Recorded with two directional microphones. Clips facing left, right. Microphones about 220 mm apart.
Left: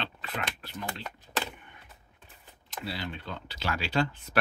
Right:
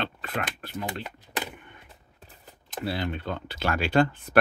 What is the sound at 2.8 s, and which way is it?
Speech, 55° right (ahead or behind).